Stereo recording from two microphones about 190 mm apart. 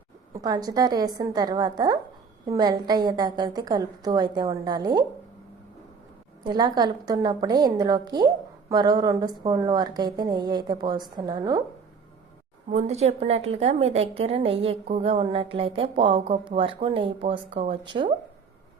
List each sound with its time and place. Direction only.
0.3 s a woman's voice: 20° right (ahead or behind)
6.4 s a woman's voice: 20° right (ahead or behind)
12.6 s a woman's voice: 35° right (ahead or behind)